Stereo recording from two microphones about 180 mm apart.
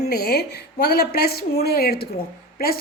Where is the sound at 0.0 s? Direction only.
60° left (ahead or behind).